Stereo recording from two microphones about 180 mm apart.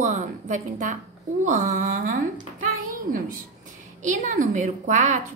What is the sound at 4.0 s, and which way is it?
A woman's voice, 45° right (ahead or behind).